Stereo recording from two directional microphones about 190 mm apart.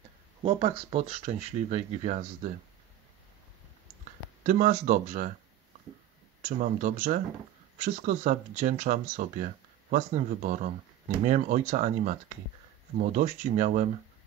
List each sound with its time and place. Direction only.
0.4 s speech: 30° right (ahead or behind)
4.5 s speech: 40° right (ahead or behind)
6.4 s speech: 45° right (ahead or behind)